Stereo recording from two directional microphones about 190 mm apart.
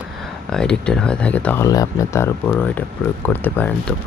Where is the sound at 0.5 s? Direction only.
5° left (ahead or behind).